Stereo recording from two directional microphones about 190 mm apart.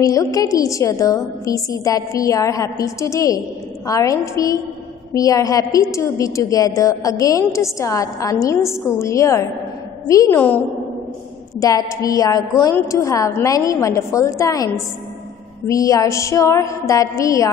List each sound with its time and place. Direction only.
0.0 s a woman's voice: 15° left (ahead or behind)
11.6 s a woman's voice: 15° left (ahead or behind)